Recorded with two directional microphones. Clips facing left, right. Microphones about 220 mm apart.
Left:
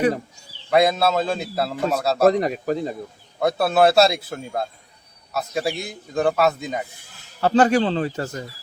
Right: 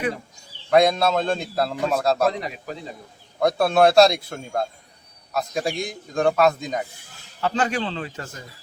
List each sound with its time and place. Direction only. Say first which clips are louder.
0.7 s a man's voice: even; 5° left (ahead or behind)
2.2 s speech: left 7 dB; 50° left (ahead or behind)
3.4 s a man's voice: even; 5° left (ahead or behind)
7.4 s a man's voice: left 7 dB; 40° left (ahead or behind)